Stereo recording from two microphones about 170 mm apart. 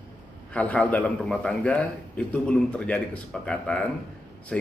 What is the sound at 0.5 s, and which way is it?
A man's voice, 10° left (ahead or behind).